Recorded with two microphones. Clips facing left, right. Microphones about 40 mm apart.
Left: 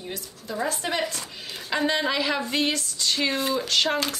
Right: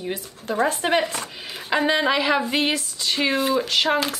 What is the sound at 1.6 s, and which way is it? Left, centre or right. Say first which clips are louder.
Speech: right 4 dB; centre.